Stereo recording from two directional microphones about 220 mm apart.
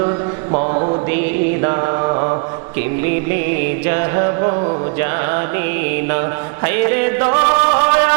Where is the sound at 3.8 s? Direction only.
20° right (ahead or behind).